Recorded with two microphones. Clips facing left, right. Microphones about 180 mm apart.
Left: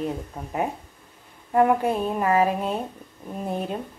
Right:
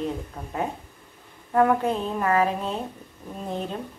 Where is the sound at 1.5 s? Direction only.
10° left (ahead or behind).